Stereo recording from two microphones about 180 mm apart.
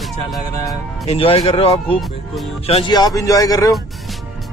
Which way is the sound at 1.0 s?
35° left (ahead or behind).